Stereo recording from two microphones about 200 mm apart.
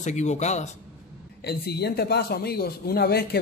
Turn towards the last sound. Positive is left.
turn(degrees=55)  # may be behind; listen again after turning